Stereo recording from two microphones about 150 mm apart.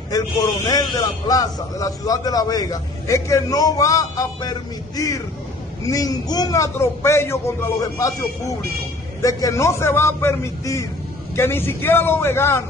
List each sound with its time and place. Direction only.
0.1 s a man's voice: 25° left (ahead or behind)